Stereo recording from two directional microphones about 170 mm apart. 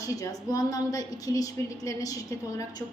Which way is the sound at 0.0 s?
20° left (ahead or behind).